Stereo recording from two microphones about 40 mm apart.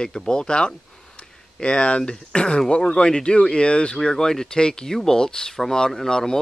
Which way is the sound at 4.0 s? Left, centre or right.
Centre.